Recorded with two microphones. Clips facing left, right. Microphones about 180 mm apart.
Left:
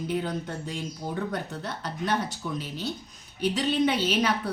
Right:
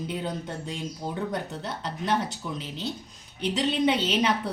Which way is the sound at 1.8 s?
25° right (ahead or behind).